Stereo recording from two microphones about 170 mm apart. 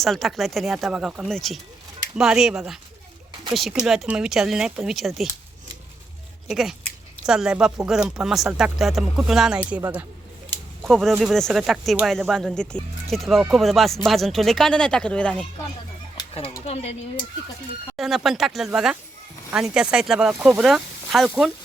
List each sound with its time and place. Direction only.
0.0 s speech: centre (ahead or behind)
6.5 s speech: centre (ahead or behind)
16.6 s speech: 40° left (ahead or behind)
17.9 s speech: centre (ahead or behind)